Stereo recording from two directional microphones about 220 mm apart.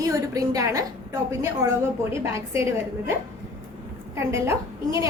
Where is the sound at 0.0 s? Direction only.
15° right (ahead or behind).